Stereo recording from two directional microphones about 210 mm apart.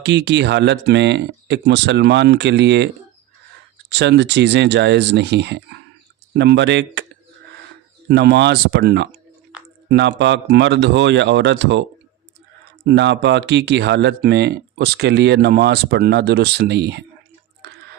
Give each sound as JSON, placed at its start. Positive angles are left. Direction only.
{"t": 0.0, "sound": "speech", "side_deg": -55}
{"t": 8.0, "sound": "speech", "side_deg": -50}
{"t": 12.9, "sound": "speech", "side_deg": -55}